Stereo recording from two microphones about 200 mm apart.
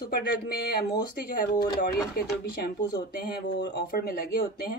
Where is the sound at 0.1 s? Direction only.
50° left (ahead or behind).